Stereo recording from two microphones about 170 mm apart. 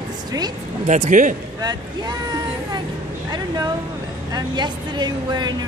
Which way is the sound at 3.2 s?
20° right (ahead or behind).